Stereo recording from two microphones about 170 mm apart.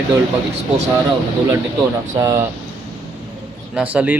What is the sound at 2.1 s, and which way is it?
Speech, 20° right (ahead or behind).